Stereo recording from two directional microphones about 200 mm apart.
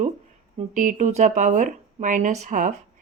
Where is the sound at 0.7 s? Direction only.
40° right (ahead or behind).